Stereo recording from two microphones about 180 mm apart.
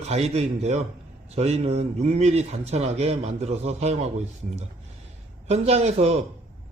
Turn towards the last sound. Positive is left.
turn(degrees=-35)  # may be behind; listen again after turning